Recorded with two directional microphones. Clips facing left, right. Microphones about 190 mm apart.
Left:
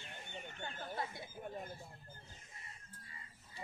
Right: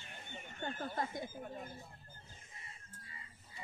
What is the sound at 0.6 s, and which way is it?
Speech, 45° right (ahead or behind).